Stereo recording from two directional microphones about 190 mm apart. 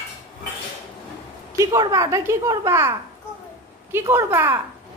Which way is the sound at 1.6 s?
20° right (ahead or behind).